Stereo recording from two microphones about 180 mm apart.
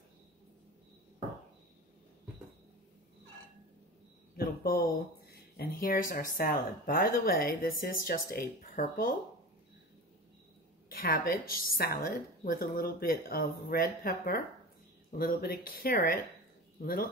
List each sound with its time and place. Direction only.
4.4 s a sound: 55° left (ahead or behind)
4.9 s speech: 60° left (ahead or behind)
10.9 s a woman's voice: 55° left (ahead or behind)